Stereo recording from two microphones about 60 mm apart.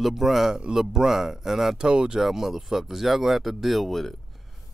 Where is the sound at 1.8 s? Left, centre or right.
Centre.